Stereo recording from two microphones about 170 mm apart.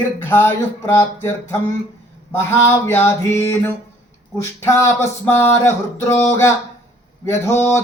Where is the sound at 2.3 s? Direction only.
15° left (ahead or behind).